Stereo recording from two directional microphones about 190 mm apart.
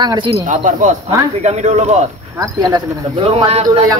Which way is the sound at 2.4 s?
20° right (ahead or behind).